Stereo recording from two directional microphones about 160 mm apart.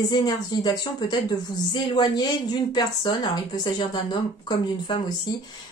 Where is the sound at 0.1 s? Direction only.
25° left (ahead or behind).